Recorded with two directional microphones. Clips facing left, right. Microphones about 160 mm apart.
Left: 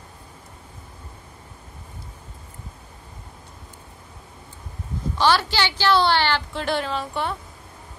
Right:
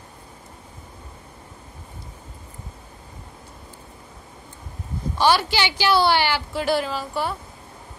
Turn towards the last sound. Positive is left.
turn(degrees=-5)  # may be behind; listen again after turning